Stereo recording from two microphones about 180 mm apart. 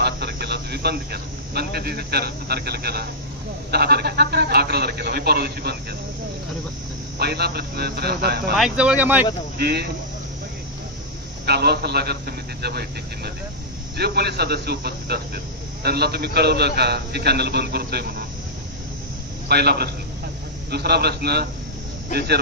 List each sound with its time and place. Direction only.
0.0 s speech: 65° right (ahead or behind)
7.2 s speech: 65° right (ahead or behind)
8.5 s speech: 5° right (ahead or behind)
9.6 s speech: 65° right (ahead or behind)
11.4 s speech: 65° right (ahead or behind)
19.4 s speech: 65° right (ahead or behind)